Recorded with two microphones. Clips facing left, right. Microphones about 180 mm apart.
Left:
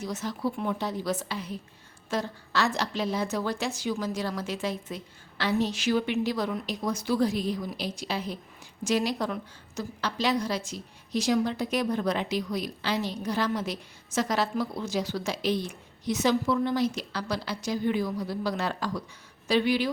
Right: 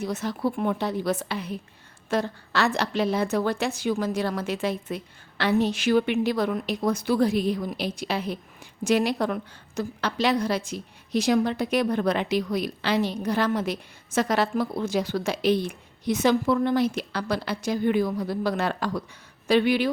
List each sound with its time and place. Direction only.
0.0 s a woman's voice: 60° right (ahead or behind)